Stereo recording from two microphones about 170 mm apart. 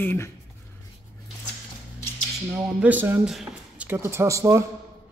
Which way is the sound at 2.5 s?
5° right (ahead or behind).